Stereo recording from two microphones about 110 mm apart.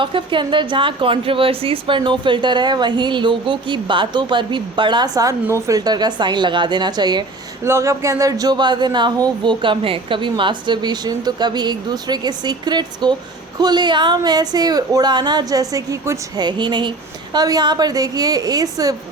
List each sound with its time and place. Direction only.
0.0 s speech: 50° right (ahead or behind)
7.6 s speech: 25° right (ahead or behind)
16.5 s speech: 45° right (ahead or behind)